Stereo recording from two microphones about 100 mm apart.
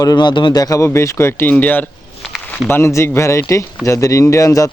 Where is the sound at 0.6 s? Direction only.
35° left (ahead or behind); by 1.8 s 15° left (ahead or behind).